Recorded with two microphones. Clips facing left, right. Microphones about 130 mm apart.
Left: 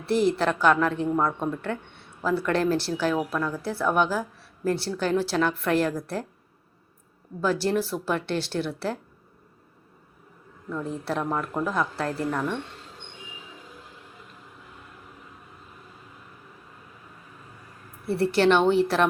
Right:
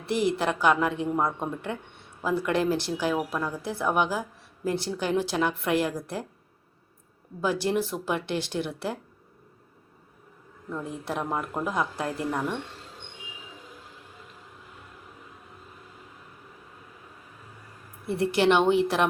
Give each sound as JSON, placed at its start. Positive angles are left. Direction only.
{"t": 0.0, "sound": "a woman's voice", "side_deg": -15}
{"t": 7.4, "sound": "a woman's voice", "side_deg": -15}
{"t": 10.7, "sound": "a woman's voice", "side_deg": -15}
{"t": 18.0, "sound": "a woman's voice", "side_deg": -20}